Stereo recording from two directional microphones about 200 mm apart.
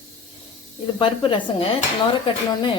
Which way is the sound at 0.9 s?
25° left (ahead or behind).